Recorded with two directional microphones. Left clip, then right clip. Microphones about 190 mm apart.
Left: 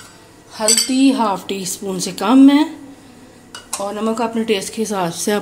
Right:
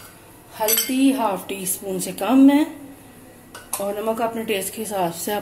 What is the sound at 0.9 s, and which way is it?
A woman's voice, 45° left (ahead or behind).